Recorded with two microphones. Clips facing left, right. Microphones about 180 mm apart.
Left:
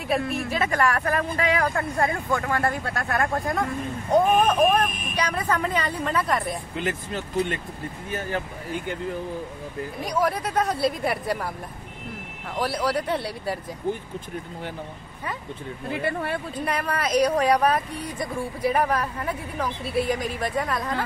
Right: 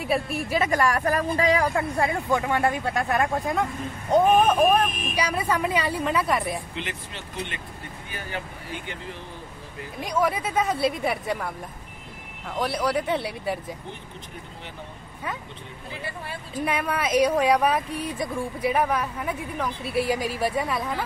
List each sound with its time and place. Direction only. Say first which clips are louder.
0.0 s speech: left 1 dB; 5° right (ahead or behind)
1.0 s speech: right 2 dB; 35° right (ahead or behind)
1.6 s speech: even; 10° right (ahead or behind)
4.2 s speech: right 1 dB; centre (ahead or behind)
6.8 s speech: left 7 dB; 45° left (ahead or behind)
10.1 s speech: even; centre (ahead or behind)
12.5 s speech: even; centre (ahead or behind)
15.9 s speech: left 9 dB; 60° left (ahead or behind)
16.6 s speech: right 2 dB; 5° right (ahead or behind)